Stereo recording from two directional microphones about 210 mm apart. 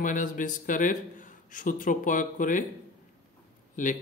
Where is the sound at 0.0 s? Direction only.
40° left (ahead or behind).